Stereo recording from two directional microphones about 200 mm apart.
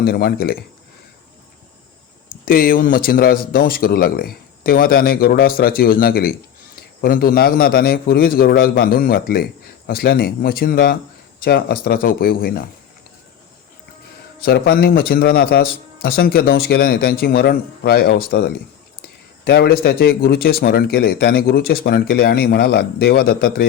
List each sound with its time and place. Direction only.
0.0 s speech: 50° left (ahead or behind)
2.3 s speech: 45° left (ahead or behind)
14.4 s speech: 50° left (ahead or behind)